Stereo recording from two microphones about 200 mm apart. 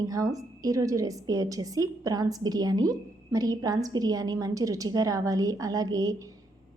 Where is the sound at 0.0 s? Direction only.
15° right (ahead or behind).